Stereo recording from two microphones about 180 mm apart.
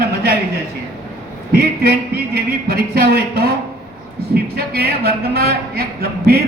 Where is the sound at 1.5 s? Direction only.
60° right (ahead or behind).